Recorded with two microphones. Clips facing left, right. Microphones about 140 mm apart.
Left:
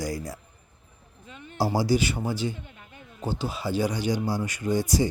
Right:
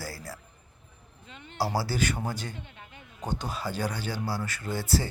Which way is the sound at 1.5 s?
20° left (ahead or behind).